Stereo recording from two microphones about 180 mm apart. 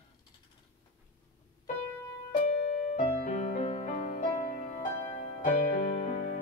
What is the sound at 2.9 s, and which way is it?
Music, 40° left (ahead or behind).